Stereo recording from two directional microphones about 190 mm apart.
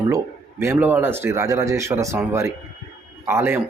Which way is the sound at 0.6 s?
10° right (ahead or behind).